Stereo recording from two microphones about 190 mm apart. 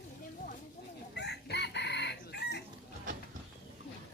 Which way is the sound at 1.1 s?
60° left (ahead or behind).